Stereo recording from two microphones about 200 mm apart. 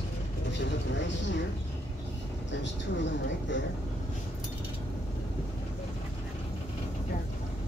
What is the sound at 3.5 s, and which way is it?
Speech, 65° left (ahead or behind).